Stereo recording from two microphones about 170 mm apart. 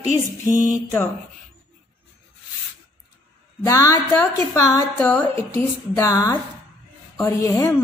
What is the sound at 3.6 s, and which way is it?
A woman's voice, 20° left (ahead or behind).